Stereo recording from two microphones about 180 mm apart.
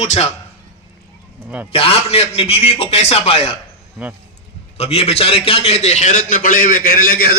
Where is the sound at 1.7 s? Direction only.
30° left (ahead or behind).